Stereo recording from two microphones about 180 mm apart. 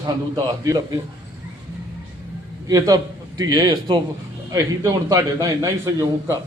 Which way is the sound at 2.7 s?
20° right (ahead or behind).